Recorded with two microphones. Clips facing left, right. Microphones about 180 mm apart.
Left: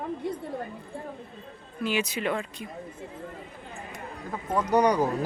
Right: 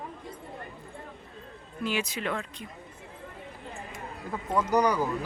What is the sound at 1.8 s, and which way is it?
Speech, centre (ahead or behind).